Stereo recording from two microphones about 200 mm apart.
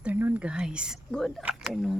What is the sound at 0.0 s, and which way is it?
Speech, 10° right (ahead or behind).